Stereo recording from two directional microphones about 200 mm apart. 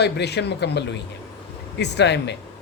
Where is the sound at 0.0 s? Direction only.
55° left (ahead or behind).